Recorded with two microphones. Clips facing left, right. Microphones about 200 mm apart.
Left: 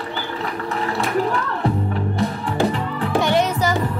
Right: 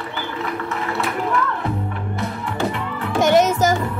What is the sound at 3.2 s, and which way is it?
Music, 45° right (ahead or behind).